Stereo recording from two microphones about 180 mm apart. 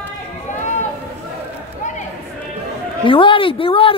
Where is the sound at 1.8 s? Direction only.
40° left (ahead or behind).